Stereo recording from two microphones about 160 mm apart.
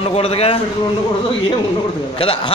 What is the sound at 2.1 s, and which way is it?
Speech, 35° left (ahead or behind).